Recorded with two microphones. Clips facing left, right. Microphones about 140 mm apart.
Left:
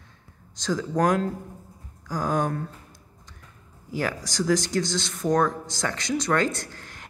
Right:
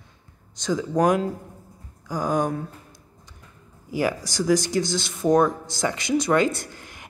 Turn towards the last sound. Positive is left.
turn(degrees=-10)  # may be behind; listen again after turning